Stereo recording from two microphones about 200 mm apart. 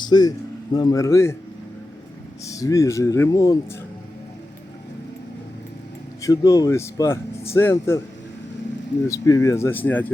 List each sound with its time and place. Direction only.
0.0 s a man's voice: 20° left (ahead or behind)
2.4 s speech: 15° left (ahead or behind)
6.2 s speech: 20° left (ahead or behind)
9.0 s speech: 15° left (ahead or behind)